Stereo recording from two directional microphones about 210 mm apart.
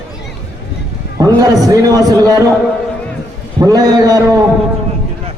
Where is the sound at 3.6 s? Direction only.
15° right (ahead or behind).